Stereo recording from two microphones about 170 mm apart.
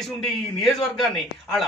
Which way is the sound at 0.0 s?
Centre (ahead or behind).